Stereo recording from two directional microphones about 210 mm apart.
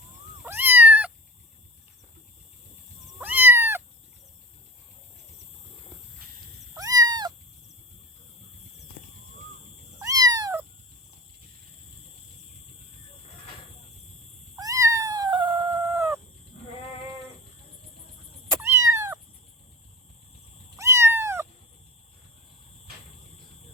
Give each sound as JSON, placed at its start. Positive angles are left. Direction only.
{"t": 0.4, "sound": "cat", "side_deg": -10}
{"t": 3.2, "sound": "cat", "side_deg": -10}
{"t": 6.7, "sound": "cat", "side_deg": -15}
{"t": 10.0, "sound": "cat", "side_deg": -15}
{"t": 14.5, "sound": "cat", "side_deg": -15}
{"t": 18.5, "sound": "cat", "side_deg": -15}
{"t": 20.7, "sound": "cat", "side_deg": -15}